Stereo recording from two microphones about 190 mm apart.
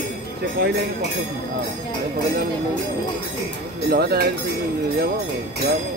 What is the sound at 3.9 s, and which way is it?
Speech, 55° right (ahead or behind).